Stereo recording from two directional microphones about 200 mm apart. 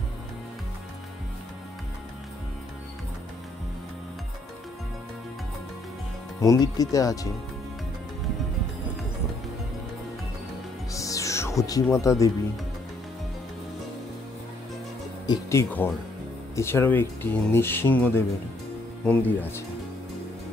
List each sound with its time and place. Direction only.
6.4 s speech: 15° left (ahead or behind)
10.9 s music: 15° left (ahead or behind)
15.2 s speech: 10° left (ahead or behind)